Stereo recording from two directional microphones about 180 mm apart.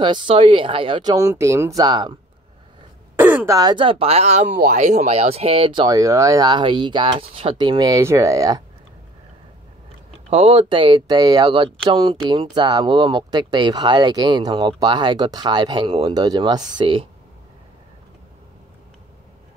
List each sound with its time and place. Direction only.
0.0 s speech: 30° right (ahead or behind)
3.2 s speech: 10° right (ahead or behind)
3.5 s speech: 25° right (ahead or behind)
4.6 s speech: 50° right (ahead or behind); by 8.6 s 20° right (ahead or behind)
10.3 s speech: 30° right (ahead or behind)